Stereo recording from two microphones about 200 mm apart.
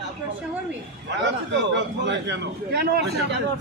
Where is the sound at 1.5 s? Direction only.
65° right (ahead or behind).